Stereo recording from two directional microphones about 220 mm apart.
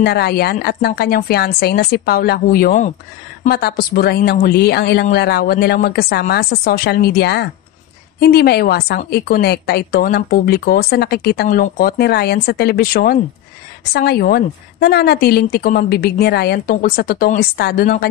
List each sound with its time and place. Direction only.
0.0 s a woman's voice: 45° left (ahead or behind)